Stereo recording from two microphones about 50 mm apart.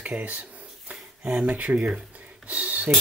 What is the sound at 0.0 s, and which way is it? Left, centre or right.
Speech, right.